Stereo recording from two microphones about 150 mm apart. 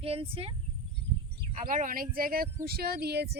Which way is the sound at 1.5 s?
65° right (ahead or behind).